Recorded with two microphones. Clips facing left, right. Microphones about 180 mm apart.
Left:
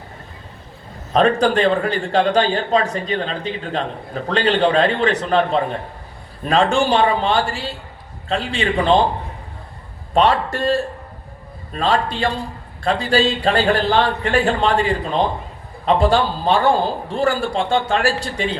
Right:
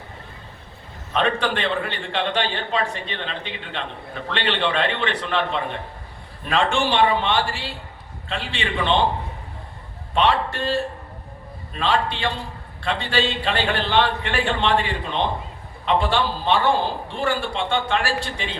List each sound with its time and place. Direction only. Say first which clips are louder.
1.1 s a man's voice: left 7 dB; 40° left (ahead or behind)
10.2 s a man's voice: left 4 dB; 40° left (ahead or behind)
11.7 s a man's voice: left 3 dB; 40° left (ahead or behind)